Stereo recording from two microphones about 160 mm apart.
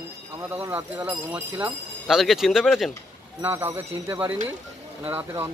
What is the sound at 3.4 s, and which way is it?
Speech, 15° right (ahead or behind).